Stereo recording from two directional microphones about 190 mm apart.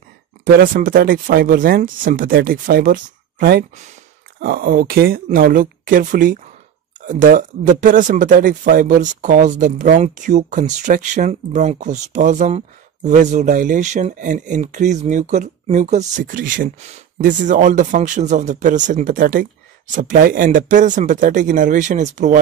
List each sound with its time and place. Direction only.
0.5 s speech: 50° right (ahead or behind)
4.4 s speech: 55° right (ahead or behind)